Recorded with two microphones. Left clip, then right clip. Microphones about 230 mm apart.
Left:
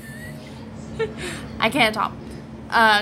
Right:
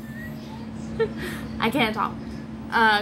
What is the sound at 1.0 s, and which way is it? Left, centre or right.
A woman's voice, left.